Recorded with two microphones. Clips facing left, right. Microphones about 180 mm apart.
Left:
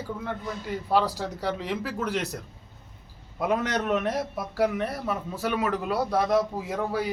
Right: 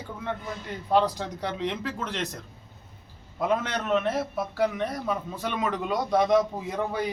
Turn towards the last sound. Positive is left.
turn(degrees=5)  # may be behind; listen again after turning